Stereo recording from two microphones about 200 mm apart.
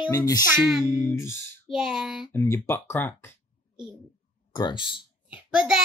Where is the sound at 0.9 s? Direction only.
10° left (ahead or behind).